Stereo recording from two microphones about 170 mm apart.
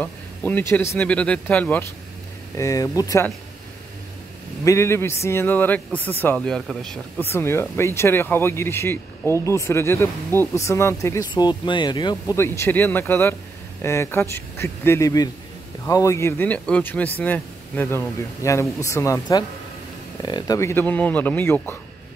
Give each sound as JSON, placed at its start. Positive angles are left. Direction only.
{"t": 0.0, "sound": "speech", "side_deg": 10}
{"t": 2.5, "sound": "speech", "side_deg": 20}
{"t": 4.6, "sound": "speech", "side_deg": 15}